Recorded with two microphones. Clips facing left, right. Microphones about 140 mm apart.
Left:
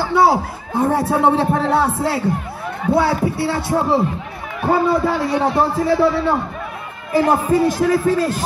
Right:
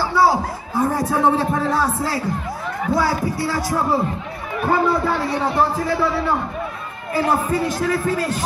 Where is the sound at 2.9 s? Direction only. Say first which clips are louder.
Left 4 dB; 60° left (ahead or behind).